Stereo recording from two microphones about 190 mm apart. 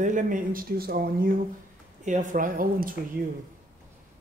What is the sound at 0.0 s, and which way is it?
A woman's voice, 40° right (ahead or behind).